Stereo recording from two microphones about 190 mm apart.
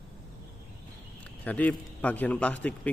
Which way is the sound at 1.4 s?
10° left (ahead or behind).